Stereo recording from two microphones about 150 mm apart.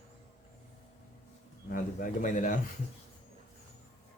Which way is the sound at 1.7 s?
60° left (ahead or behind).